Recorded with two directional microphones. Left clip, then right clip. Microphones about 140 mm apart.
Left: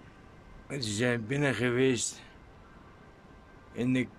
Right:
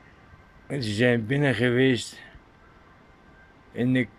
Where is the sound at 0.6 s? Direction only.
5° right (ahead or behind).